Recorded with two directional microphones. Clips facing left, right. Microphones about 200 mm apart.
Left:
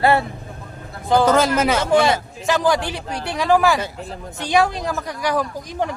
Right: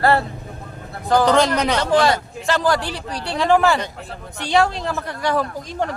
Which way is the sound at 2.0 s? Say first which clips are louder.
Even; 20° left (ahead or behind).